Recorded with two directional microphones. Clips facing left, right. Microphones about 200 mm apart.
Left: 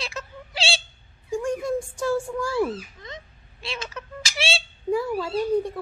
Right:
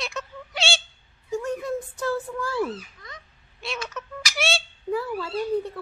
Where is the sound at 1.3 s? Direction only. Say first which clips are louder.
Left 2 dB; 15° left (ahead or behind).